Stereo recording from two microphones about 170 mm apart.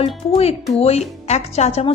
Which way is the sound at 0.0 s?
35° left (ahead or behind).